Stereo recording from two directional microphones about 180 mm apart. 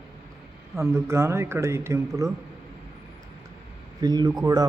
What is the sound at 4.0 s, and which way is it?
Speech, 20° right (ahead or behind).